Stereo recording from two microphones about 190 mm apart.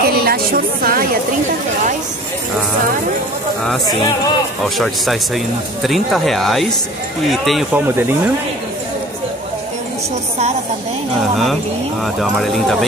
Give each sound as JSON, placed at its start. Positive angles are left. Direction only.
{"t": 0.0, "sound": "a sound", "side_deg": -55}
{"t": 4.7, "sound": "speech", "side_deg": 0}
{"t": 12.2, "sound": "speech", "side_deg": 0}